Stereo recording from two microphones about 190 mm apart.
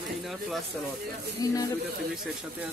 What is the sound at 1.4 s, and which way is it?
Speech, 20° left (ahead or behind).